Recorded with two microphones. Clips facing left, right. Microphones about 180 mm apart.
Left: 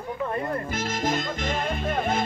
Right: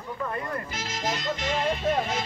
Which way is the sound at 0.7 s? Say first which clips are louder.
Left 6 dB; 50° left (ahead or behind).